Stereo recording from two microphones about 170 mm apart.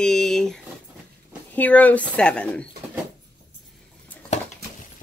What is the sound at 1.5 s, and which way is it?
Speech, 10° left (ahead or behind).